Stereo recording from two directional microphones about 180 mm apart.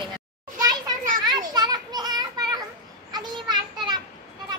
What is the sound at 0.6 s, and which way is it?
Children playing, 20° right (ahead or behind).